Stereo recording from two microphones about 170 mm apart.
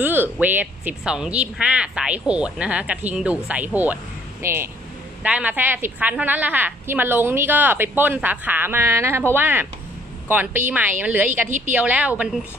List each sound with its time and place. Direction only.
0.0 s a woman's voice: 10° right (ahead or behind)
11.4 s a woman's voice: 50° right (ahead or behind)
11.7 s a woman's voice: 10° right (ahead or behind)